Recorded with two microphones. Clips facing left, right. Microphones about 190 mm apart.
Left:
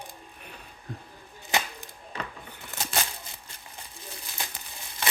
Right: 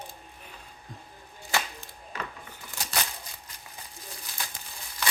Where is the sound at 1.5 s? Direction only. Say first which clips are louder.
Left 1 dB; 20° left (ahead or behind).